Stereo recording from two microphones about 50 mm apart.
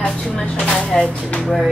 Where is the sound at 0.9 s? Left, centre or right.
Centre.